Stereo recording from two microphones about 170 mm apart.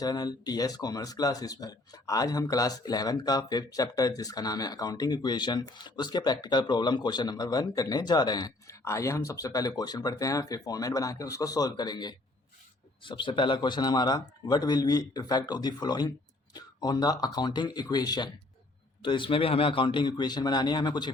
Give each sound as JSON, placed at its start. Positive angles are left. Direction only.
{"t": 0.0, "sound": "speech", "side_deg": 25}